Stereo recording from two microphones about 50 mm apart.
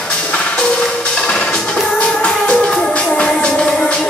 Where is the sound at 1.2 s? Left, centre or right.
Left.